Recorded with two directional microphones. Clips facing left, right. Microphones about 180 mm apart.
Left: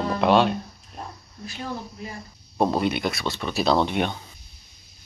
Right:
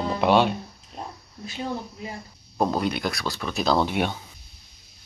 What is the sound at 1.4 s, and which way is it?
Speech, 20° right (ahead or behind).